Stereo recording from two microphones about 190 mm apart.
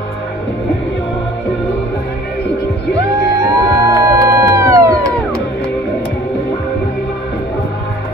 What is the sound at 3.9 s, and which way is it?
Music, 15° right (ahead or behind).